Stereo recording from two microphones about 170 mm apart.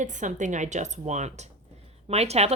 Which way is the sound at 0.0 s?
45° right (ahead or behind).